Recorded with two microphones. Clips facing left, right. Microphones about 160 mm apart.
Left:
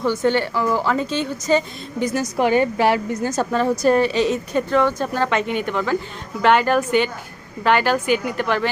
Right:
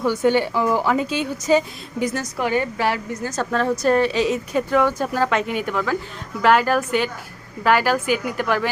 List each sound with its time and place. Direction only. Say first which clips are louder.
0.0 s a woman's voice: right 1 dB; 10° right (ahead or behind)
2.4 s a woman's voice: left 4 dB; 20° left (ahead or behind)
3.5 s a woman's voice: left 1 dB; 5° left (ahead or behind)